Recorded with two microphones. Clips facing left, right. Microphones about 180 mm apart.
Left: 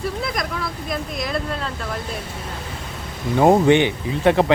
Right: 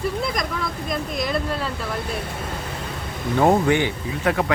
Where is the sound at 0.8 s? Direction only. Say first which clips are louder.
Right 2 dB; centre (ahead or behind).